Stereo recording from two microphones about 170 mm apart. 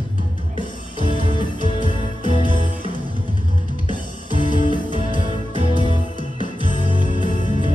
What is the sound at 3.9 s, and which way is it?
Music, 25° left (ahead or behind).